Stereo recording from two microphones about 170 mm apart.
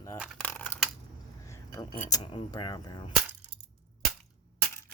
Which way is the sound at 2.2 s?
25° left (ahead or behind).